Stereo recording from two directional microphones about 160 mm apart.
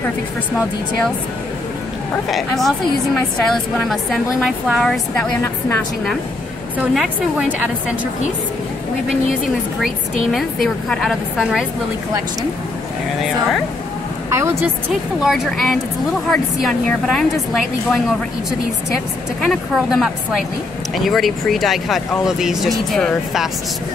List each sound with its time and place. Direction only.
2.3 s speech: centre (ahead or behind)
3.8 s speech: centre (ahead or behind)
6.8 s a woman's voice: 5° right (ahead or behind)
9.8 s speech: centre (ahead or behind)
14.3 s a woman's voice: 15° right (ahead or behind)
14.9 s speech: centre (ahead or behind)
19.4 s speech: centre (ahead or behind)